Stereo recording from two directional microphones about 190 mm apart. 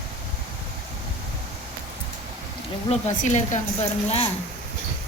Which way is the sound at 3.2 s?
40° left (ahead or behind).